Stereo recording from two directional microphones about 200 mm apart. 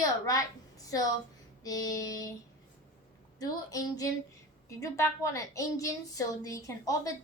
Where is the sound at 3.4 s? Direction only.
15° left (ahead or behind).